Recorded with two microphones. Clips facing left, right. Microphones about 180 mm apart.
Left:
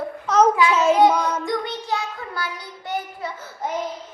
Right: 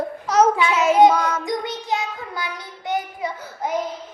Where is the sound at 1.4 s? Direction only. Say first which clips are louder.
Even; 20° right (ahead or behind).